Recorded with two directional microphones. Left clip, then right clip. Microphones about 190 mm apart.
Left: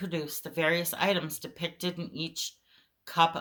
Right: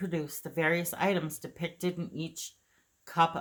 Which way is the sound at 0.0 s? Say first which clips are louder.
Left 1 dB; 40° right (ahead or behind).